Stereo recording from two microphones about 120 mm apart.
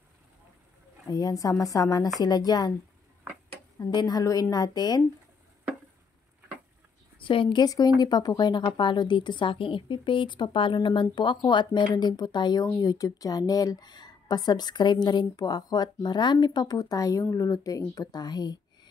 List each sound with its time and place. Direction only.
1.0 s speech: 30° left (ahead or behind)
3.8 s speech: 35° left (ahead or behind)
7.2 s speech: 45° left (ahead or behind)